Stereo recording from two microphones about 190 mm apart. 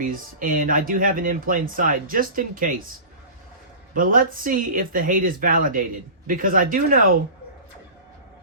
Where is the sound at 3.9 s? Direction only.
45° right (ahead or behind).